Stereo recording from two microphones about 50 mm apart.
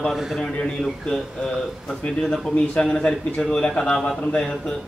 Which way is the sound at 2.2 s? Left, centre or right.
Centre.